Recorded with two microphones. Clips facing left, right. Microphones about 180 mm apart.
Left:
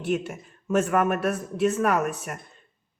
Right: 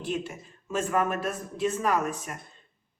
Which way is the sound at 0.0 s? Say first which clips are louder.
Left 5 dB; 65° left (ahead or behind).